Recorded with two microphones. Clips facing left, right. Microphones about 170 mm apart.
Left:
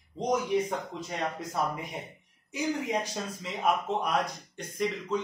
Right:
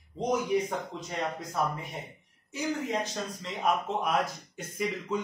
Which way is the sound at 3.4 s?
Centre (ahead or behind).